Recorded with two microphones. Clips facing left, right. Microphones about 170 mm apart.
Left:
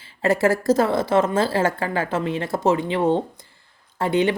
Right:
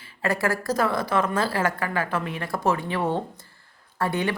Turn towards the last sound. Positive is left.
turn(degrees=20)  # may be behind; listen again after turning